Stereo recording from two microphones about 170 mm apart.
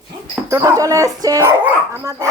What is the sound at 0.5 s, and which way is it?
Speech, 20° right (ahead or behind).